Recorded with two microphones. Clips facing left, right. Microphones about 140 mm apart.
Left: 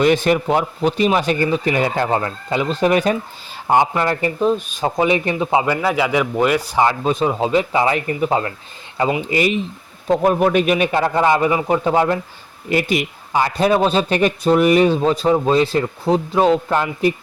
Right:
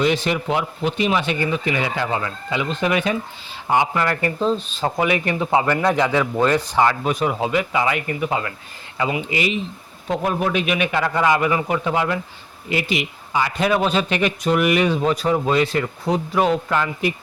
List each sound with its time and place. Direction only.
0.0 s speech: 50° left (ahead or behind)
3.9 s speech: 25° left (ahead or behind)
4.4 s speech: 15° left (ahead or behind)
7.0 s speech: 25° left (ahead or behind)
10.1 s speech: 45° left (ahead or behind)